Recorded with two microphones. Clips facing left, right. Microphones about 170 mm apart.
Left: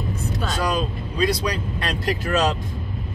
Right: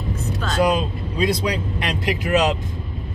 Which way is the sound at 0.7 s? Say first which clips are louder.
Right 3 dB; 25° right (ahead or behind).